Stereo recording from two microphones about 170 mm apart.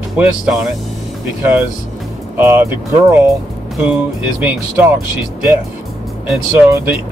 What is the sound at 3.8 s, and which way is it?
Speech, 10° right (ahead or behind).